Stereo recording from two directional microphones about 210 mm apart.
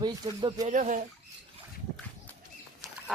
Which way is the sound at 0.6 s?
35° right (ahead or behind).